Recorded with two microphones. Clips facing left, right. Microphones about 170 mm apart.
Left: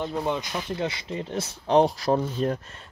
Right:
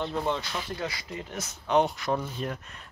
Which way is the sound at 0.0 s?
15° left (ahead or behind).